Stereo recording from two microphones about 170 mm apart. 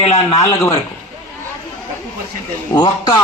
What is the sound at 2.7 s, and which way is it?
Speech, 25° left (ahead or behind).